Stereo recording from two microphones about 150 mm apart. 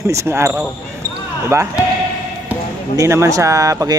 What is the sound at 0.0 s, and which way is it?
Speech, 20° right (ahead or behind).